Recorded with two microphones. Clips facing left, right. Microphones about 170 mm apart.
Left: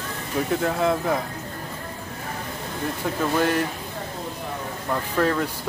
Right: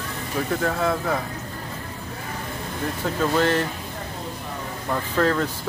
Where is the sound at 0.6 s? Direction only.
20° left (ahead or behind).